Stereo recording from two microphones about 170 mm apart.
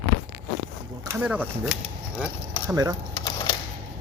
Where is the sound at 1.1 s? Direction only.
10° right (ahead or behind).